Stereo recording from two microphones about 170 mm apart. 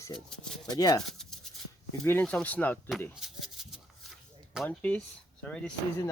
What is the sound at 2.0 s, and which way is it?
Speech, 10° left (ahead or behind).